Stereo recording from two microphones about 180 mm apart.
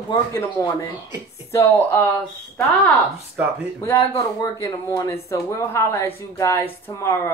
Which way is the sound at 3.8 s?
15° left (ahead or behind).